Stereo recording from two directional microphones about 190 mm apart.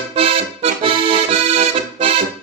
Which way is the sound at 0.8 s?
30° right (ahead or behind).